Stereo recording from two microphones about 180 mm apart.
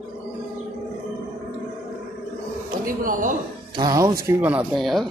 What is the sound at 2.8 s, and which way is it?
Speech, 50° right (ahead or behind).